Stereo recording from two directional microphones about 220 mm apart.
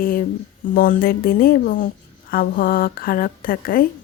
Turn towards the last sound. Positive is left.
turn(degrees=40)  # may be behind; listen again after turning